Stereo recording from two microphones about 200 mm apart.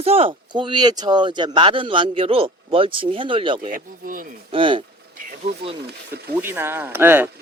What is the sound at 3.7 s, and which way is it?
Speech, 45° right (ahead or behind).